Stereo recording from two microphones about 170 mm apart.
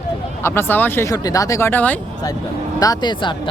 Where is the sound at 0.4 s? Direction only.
15° left (ahead or behind).